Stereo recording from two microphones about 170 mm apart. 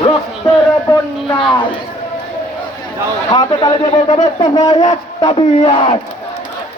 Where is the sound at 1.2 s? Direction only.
30° left (ahead or behind).